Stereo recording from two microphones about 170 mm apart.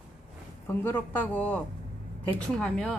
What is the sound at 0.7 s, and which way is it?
Speech, 10° left (ahead or behind).